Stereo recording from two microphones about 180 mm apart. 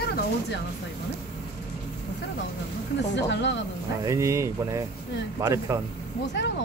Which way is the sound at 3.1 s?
80° left.